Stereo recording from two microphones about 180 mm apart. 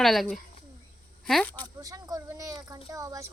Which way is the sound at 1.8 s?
20° right (ahead or behind).